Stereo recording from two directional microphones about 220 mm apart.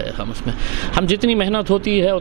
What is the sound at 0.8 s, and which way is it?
Speech, 15° right (ahead or behind).